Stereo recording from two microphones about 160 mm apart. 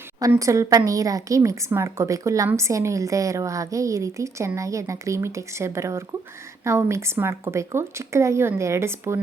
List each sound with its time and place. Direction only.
0.2 s speech: 20° right (ahead or behind)